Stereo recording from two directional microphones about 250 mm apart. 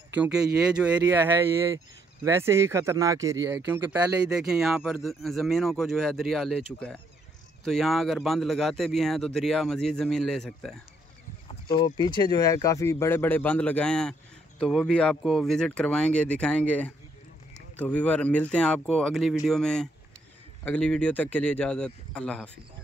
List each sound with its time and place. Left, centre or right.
0.1 s speech: centre
11.6 s speech: centre